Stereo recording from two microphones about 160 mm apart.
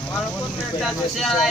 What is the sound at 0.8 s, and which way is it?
Speech, centre (ahead or behind).